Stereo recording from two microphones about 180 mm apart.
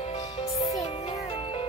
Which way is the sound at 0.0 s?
35° left (ahead or behind).